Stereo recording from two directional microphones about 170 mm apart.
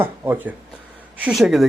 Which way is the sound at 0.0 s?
10° right (ahead or behind).